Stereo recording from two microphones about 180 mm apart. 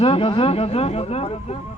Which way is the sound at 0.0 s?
30° left (ahead or behind).